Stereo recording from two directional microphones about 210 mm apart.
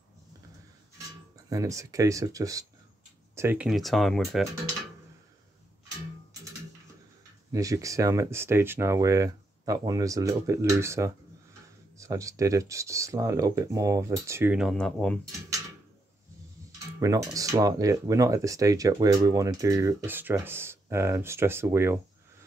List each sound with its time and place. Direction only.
1.5 s speech: 15° right (ahead or behind); by 4.5 s centre (ahead or behind)
7.5 s speech: 15° right (ahead or behind); by 15.1 s 5° left (ahead or behind)
17.0 s speech: 15° right (ahead or behind)